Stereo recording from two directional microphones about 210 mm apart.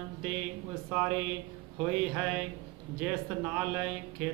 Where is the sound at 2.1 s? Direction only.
5° right (ahead or behind).